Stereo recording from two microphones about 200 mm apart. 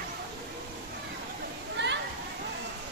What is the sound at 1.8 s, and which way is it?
Children playing, 60° right (ahead or behind).